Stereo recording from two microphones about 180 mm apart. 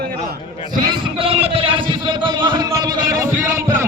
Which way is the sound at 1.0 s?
30° right (ahead or behind).